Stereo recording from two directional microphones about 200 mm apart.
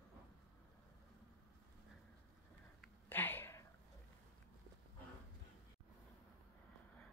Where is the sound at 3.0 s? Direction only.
10° left (ahead or behind).